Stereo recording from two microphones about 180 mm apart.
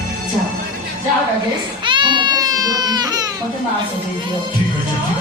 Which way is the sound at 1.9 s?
25° right (ahead or behind).